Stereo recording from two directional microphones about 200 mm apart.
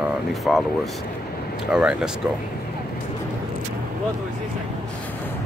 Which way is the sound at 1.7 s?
5° right (ahead or behind).